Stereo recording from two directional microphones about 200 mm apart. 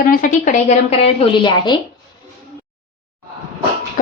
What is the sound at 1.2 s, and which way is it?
Speech, 25° left (ahead or behind).